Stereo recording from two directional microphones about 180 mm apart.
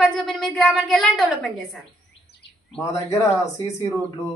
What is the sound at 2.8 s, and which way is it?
Speech, 15° left (ahead or behind).